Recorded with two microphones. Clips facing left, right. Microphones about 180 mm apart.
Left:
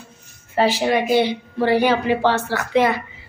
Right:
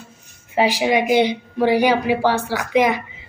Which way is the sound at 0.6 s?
15° right (ahead or behind).